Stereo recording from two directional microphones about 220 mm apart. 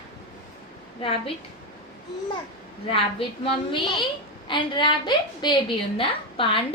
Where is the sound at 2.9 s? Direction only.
25° left (ahead or behind).